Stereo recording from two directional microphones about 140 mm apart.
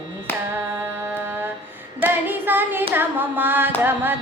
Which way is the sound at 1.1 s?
15° right (ahead or behind).